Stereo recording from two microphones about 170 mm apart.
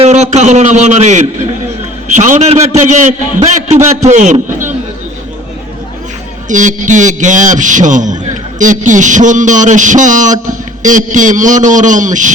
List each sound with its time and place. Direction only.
0.0 s a man's voice: 40° right (ahead or behind)
6.5 s a man's voice: 45° right (ahead or behind)